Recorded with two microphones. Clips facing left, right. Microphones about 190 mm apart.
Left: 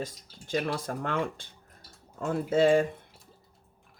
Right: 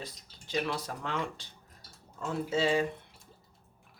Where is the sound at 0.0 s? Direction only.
50° left (ahead or behind).